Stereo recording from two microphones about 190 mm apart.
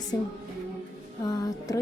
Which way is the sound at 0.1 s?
15° left (ahead or behind).